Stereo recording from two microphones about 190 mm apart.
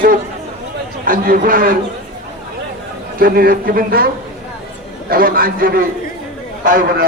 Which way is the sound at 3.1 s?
50° right (ahead or behind).